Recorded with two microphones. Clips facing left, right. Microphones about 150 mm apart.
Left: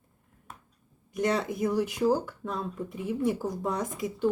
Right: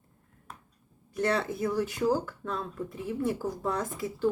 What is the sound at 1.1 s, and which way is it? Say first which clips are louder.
Speech: left 1 dB; 15° left (ahead or behind).